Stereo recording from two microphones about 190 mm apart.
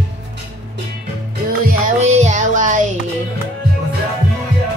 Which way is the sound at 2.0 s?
40° right (ahead or behind).